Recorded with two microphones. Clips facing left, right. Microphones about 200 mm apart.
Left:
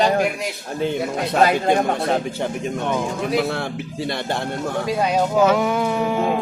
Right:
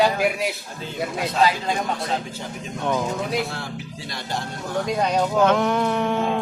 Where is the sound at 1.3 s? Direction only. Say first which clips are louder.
Left 5 dB; 60° left (ahead or behind).